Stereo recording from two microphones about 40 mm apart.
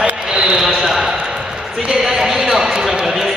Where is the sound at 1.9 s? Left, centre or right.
Centre.